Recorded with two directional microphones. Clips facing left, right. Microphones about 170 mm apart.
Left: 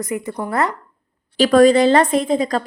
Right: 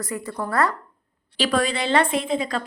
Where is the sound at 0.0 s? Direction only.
20° left (ahead or behind).